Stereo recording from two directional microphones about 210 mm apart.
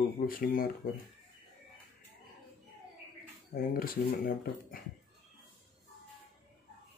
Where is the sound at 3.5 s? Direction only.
45° left (ahead or behind).